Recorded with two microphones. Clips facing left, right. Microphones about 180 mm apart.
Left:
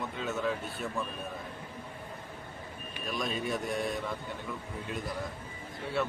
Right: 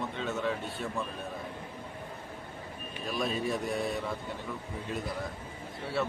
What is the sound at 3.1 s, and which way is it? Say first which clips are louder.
Speech: right 2 dB; 30° right (ahead or behind).